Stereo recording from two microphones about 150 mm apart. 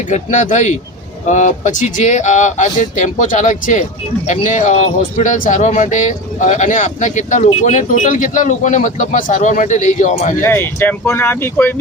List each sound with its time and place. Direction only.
0.1 s speech: 55° left (ahead or behind)
10.4 s speech: 15° left (ahead or behind)